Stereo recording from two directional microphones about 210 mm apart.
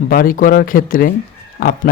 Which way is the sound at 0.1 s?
40° left (ahead or behind).